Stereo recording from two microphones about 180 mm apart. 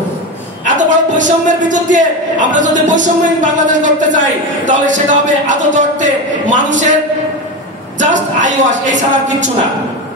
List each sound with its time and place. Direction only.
0.7 s a man's voice: 45° right (ahead or behind)
8.0 s a man's voice: 45° right (ahead or behind)